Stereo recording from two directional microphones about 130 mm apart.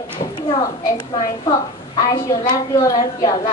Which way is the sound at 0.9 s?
35° left (ahead or behind).